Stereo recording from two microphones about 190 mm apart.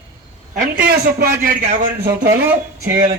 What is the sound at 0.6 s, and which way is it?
Speech, 55° right (ahead or behind).